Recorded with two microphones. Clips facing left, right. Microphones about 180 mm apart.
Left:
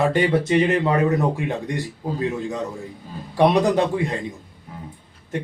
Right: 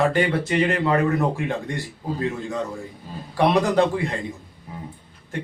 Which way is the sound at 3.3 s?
20° left (ahead or behind).